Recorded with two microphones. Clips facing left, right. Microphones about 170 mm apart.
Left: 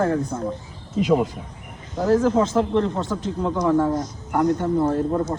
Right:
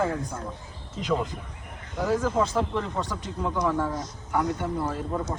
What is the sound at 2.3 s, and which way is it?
A man's voice, 10° right (ahead or behind).